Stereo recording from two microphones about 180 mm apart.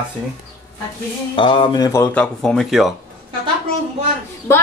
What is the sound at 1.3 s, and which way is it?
Speech, 30° left (ahead or behind).